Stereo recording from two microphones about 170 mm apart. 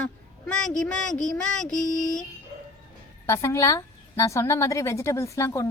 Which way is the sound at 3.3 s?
15° left (ahead or behind).